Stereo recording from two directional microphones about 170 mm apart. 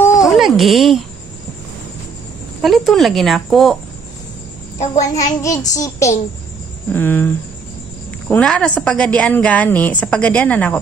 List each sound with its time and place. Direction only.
0.2 s a sound: centre (ahead or behind)
2.6 s speech: centre (ahead or behind)
5.0 s child singing: 20° left (ahead or behind)
6.9 s a woman's voice: 10° left (ahead or behind)